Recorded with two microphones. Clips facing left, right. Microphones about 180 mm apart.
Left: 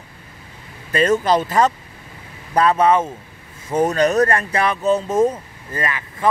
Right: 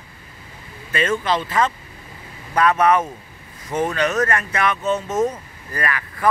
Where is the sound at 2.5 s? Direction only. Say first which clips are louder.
Left 1 dB; 30° left (ahead or behind).